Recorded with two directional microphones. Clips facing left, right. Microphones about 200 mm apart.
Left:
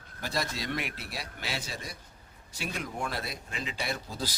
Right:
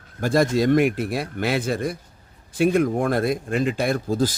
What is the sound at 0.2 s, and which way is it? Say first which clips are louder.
Speech: right 15 dB; 50° right (ahead or behind).